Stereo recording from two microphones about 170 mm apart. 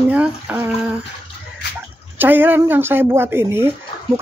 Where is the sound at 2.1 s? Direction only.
10° right (ahead or behind).